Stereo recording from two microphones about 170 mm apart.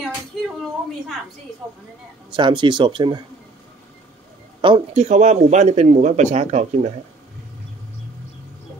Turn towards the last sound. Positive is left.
turn(degrees=-40)  # may be behind; listen again after turning